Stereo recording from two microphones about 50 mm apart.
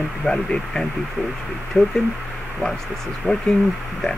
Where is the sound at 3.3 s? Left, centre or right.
Left.